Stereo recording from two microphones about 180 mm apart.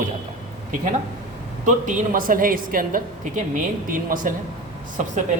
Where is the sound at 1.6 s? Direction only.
45° right (ahead or behind).